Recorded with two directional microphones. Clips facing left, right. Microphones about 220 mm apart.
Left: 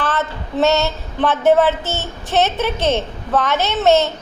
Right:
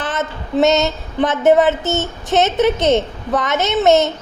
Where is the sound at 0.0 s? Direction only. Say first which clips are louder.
Left 1 dB; 20° right (ahead or behind).